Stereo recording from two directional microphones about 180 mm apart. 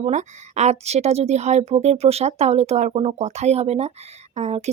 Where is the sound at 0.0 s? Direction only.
40° right (ahead or behind).